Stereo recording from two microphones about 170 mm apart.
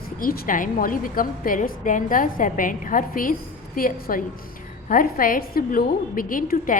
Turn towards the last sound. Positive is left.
turn(degrees=55)  # may be behind; listen again after turning